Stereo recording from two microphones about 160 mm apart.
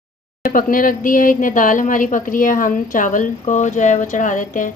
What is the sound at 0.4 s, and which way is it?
A woman's voice, 60° left (ahead or behind).